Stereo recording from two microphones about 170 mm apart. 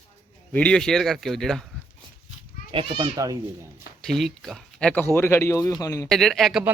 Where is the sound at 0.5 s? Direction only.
5° left (ahead or behind).